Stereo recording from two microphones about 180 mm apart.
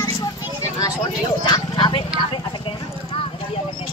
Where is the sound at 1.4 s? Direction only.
25° left (ahead or behind).